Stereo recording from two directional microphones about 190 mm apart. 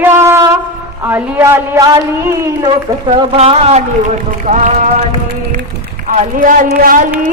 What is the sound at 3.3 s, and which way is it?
Speech, 30° right (ahead or behind).